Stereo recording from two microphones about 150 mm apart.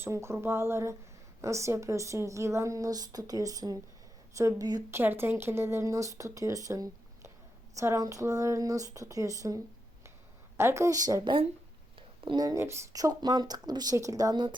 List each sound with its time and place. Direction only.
0.0 s speech: 15° right (ahead or behind)
10.6 s speech: 20° right (ahead or behind)